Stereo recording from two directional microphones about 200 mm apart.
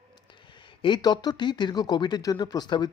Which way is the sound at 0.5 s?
25° left (ahead or behind).